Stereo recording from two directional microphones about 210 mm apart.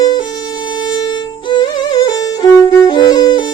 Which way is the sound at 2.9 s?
20° left (ahead or behind).